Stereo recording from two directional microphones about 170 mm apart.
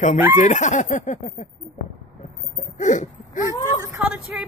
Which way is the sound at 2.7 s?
45° left (ahead or behind).